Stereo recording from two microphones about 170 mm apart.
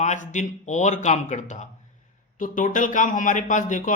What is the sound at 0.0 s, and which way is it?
Speech, 45° left (ahead or behind).